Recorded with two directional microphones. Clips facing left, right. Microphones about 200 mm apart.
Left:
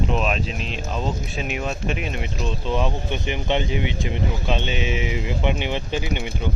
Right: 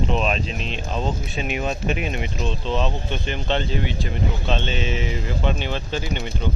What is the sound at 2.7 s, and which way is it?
Speech, 10° left (ahead or behind).